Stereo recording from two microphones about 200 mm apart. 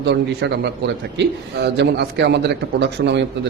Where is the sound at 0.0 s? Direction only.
60° right (ahead or behind).